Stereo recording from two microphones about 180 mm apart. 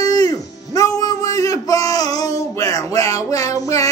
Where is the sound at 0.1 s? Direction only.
20° left (ahead or behind).